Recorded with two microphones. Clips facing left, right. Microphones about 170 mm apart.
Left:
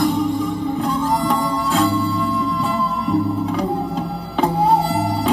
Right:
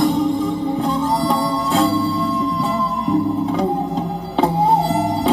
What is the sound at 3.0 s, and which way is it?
Music, 20° right (ahead or behind).